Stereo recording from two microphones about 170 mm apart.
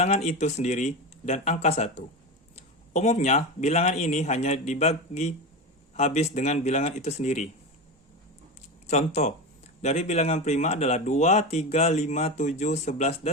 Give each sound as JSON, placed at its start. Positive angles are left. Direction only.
{"t": 0.0, "sound": "speech", "side_deg": 40}
{"t": 8.9, "sound": "speech", "side_deg": 40}